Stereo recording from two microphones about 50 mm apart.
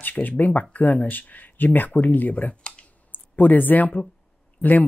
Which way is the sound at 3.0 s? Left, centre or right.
Left.